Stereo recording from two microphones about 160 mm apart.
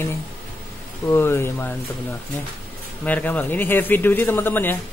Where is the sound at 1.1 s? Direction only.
15° left (ahead or behind).